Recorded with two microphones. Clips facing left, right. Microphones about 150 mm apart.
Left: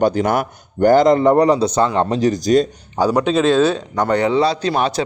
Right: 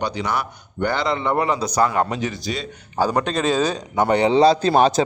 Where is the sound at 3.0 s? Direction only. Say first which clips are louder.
Left 5 dB; 10° left (ahead or behind); by 4.2 s 10° right (ahead or behind).